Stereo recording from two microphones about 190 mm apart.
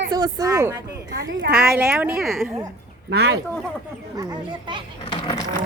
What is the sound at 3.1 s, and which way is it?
Speech, 60° right (ahead or behind).